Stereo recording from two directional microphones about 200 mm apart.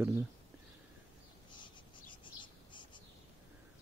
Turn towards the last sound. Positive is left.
turn(degrees=25)  # may be behind; listen again after turning